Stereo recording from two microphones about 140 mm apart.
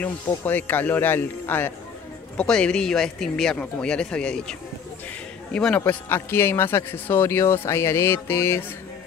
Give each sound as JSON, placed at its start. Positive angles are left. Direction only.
{"t": 0.0, "sound": "speech", "side_deg": 15}